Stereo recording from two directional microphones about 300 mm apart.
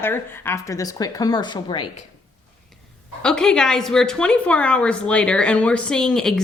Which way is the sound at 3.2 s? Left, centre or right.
Centre.